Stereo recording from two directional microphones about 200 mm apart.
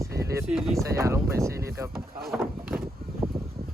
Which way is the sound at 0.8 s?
15° right (ahead or behind).